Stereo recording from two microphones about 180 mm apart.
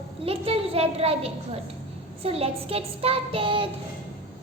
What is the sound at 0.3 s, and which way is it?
Child singing, 30° right (ahead or behind).